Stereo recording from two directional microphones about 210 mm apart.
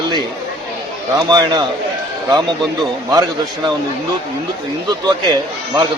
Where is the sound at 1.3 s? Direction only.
20° right (ahead or behind).